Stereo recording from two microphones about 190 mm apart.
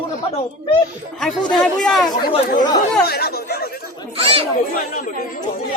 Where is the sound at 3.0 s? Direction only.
55° left (ahead or behind).